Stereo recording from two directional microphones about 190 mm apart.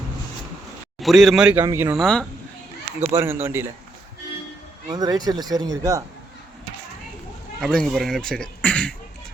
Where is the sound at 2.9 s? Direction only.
10° right (ahead or behind).